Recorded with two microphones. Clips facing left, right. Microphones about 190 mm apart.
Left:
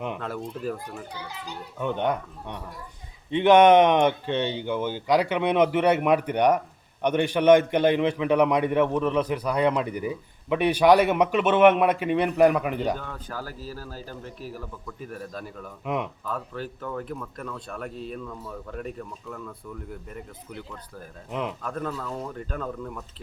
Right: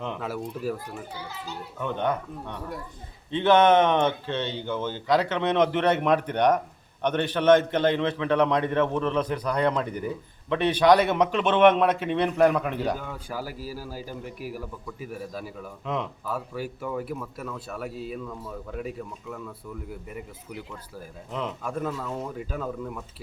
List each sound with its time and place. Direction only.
0.2 s a man's voice: 5° right (ahead or behind)
1.3 s a man's voice: 15° left (ahead or behind)
13.0 s a man's voice: 10° right (ahead or behind)